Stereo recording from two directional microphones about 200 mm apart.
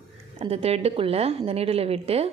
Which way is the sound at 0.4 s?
30° right (ahead or behind).